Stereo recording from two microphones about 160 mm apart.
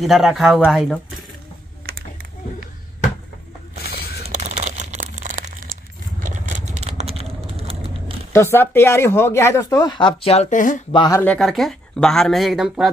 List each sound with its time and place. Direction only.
0.0 s speech: centre (ahead or behind)
1.8 s a sound: 75° right (ahead or behind)
3.9 s a sound: 45° right (ahead or behind)
6.2 s vehicle: 50° right (ahead or behind)
6.8 s typing: 45° right (ahead or behind)
8.3 s speech: 15° left (ahead or behind); by 10.8 s 55° left (ahead or behind)
10.9 s speech: 30° left (ahead or behind)
11.1 s speech: 5° left (ahead or behind)